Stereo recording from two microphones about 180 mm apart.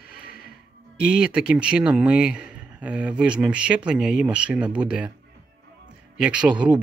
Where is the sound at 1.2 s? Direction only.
5° right (ahead or behind).